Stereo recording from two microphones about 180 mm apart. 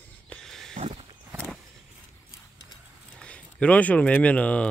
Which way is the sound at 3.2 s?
5° left (ahead or behind).